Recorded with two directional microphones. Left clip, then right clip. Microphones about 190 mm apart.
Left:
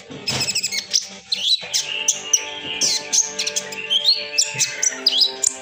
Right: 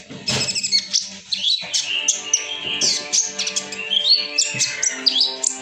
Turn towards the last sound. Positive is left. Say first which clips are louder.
# left 1 dB
turn(degrees=15)  # may be behind; listen again after turning